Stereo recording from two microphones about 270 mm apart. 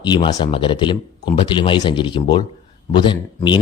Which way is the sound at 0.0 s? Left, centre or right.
Centre.